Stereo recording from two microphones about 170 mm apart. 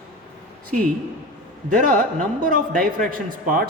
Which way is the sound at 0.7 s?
50° right (ahead or behind).